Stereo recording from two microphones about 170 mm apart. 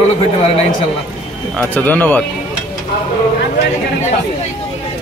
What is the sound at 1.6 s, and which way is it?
Speech, 10° left (ahead or behind).